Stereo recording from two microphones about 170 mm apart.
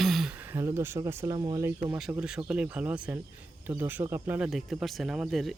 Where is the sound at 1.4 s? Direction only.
25° right (ahead or behind).